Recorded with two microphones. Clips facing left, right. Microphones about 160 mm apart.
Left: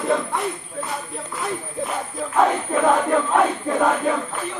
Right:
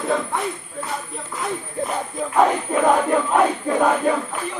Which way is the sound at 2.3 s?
10° right (ahead or behind).